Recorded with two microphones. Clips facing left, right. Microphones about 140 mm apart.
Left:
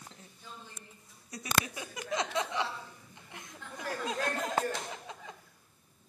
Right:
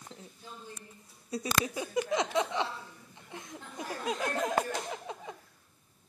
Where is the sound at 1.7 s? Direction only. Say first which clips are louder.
Right 5 dB; 20° right (ahead or behind).